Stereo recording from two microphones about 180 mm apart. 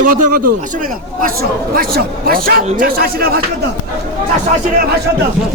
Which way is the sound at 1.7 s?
55° right (ahead or behind).